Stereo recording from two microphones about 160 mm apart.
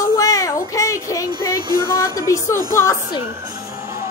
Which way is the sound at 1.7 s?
25° right (ahead or behind).